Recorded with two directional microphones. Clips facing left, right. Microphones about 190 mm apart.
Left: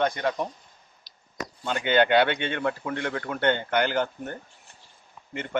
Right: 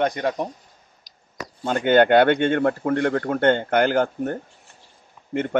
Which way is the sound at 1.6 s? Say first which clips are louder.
Right 6 dB; 50° right (ahead or behind).